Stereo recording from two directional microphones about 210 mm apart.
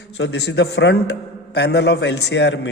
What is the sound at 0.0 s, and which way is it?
A man's voice, 55° left (ahead or behind).